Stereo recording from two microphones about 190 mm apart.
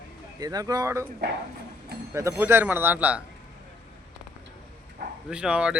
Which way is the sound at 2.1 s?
15° right (ahead or behind).